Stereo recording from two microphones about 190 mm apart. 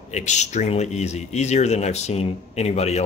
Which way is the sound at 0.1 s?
35° left (ahead or behind).